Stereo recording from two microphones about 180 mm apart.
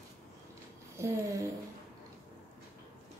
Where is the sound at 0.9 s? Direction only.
15° right (ahead or behind).